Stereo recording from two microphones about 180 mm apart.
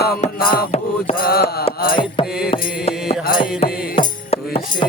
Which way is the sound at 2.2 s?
5° right (ahead or behind).